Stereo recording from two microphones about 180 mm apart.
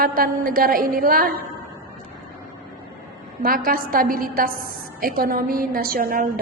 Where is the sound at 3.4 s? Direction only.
55° right (ahead or behind).